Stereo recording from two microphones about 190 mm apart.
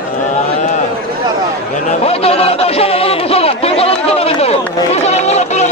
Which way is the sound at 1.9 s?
30° left (ahead or behind).